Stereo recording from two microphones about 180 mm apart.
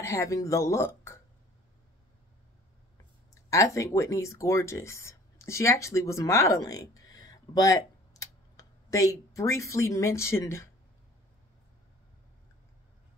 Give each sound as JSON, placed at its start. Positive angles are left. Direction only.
{"t": 0.0, "sound": "speech", "side_deg": 15}
{"t": 3.4, "sound": "speech", "side_deg": 15}